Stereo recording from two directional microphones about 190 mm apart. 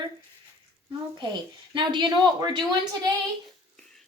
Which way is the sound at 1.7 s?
25° right (ahead or behind).